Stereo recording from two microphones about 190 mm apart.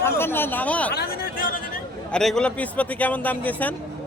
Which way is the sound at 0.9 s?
55° left (ahead or behind).